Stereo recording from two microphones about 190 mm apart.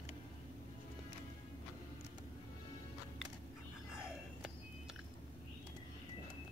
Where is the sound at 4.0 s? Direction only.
5° right (ahead or behind).